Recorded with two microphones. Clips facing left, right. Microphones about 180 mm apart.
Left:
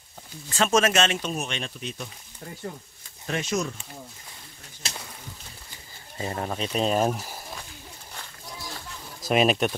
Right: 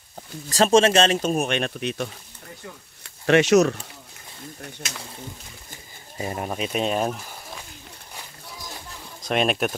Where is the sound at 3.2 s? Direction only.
75° right (ahead or behind).